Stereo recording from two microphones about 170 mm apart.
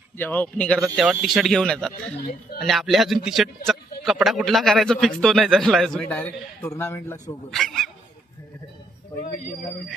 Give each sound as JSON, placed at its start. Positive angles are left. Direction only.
{"t": 0.2, "sound": "a man's voice", "side_deg": 10}
{"t": 1.9, "sound": "speech", "side_deg": 65}
{"t": 2.6, "sound": "a man's voice", "side_deg": 0}
{"t": 7.5, "sound": "speech", "side_deg": 0}
{"t": 9.2, "sound": "speech", "side_deg": 50}